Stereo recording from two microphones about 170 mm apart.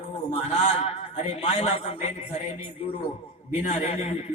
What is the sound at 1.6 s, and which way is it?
Speech, 40° left (ahead or behind).